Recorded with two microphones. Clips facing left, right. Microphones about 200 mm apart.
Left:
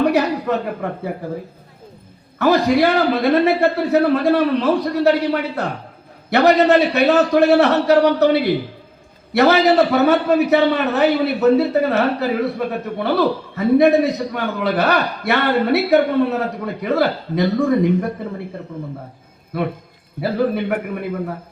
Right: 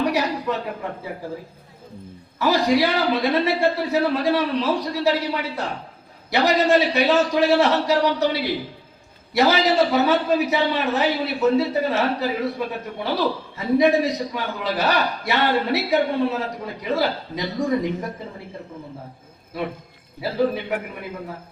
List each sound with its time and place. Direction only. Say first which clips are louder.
0.0 s a man's voice: left 5 dB; 55° left (ahead or behind)
2.4 s a man's voice: left 4 dB; 60° left (ahead or behind)
20.2 s a man's voice: left 3 dB; 55° left (ahead or behind)